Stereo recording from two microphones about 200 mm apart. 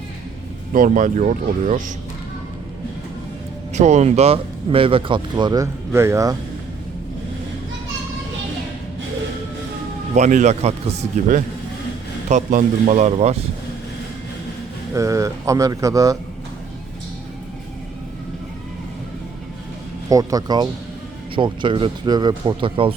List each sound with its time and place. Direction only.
0.7 s speech: 40° right (ahead or behind)
3.8 s speech: 35° right (ahead or behind); by 6.3 s 15° right (ahead or behind)
10.2 s speech: 35° right (ahead or behind)
14.9 s speech: 15° right (ahead or behind)
20.1 s speech: 15° right (ahead or behind)